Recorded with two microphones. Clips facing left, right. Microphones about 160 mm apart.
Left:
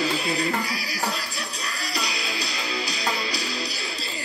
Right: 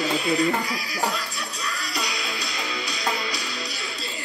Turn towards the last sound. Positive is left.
turn(degrees=30)  # may be behind; listen again after turning